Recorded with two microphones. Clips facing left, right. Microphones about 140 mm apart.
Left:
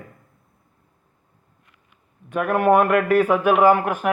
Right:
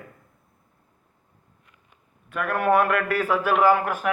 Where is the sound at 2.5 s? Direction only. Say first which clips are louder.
Left 4 dB; 15° left (ahead or behind).